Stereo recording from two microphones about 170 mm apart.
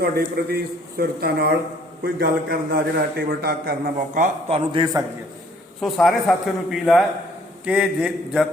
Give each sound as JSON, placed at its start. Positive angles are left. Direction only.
{"t": 0.0, "sound": "a man's voice", "side_deg": -65}
{"t": 4.4, "sound": "a man's voice", "side_deg": -30}
{"t": 5.8, "sound": "a man's voice", "side_deg": 0}